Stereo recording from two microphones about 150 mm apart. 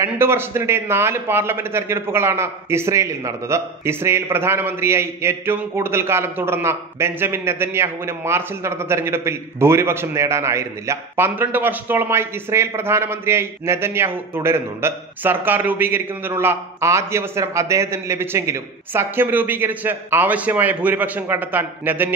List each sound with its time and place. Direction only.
0.0 s a man's voice: 15° right (ahead or behind)